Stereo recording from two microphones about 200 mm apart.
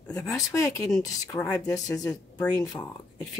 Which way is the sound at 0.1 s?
10° left (ahead or behind).